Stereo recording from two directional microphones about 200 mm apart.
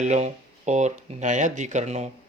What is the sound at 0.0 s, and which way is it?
Speech, 35° right (ahead or behind).